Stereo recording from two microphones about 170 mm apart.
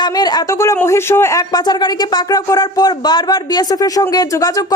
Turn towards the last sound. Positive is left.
turn(degrees=20)  # may be behind; listen again after turning